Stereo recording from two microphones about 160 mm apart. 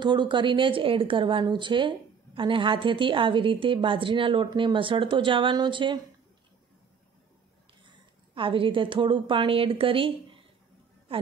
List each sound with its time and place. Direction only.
0.0 s speech: 30° right (ahead or behind)
8.4 s a woman's voice: 35° right (ahead or behind)